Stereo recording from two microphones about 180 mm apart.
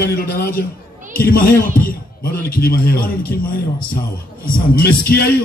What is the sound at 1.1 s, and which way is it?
Music, 55° left (ahead or behind).